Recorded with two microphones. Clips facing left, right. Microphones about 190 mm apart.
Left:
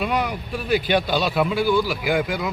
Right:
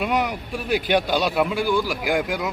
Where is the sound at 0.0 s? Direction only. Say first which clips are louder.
Right 1 dB; 10° right (ahead or behind).